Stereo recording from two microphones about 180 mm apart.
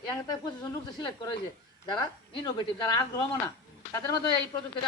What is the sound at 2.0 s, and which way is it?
Speech, 25° left (ahead or behind).